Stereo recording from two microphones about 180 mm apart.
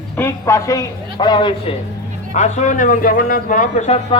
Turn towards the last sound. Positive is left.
turn(degrees=40)  # may be behind; listen again after turning